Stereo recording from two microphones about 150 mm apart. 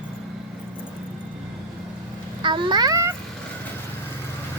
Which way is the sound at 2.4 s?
30° right (ahead or behind).